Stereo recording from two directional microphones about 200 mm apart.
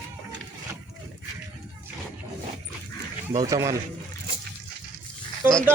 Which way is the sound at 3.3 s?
20° right (ahead or behind).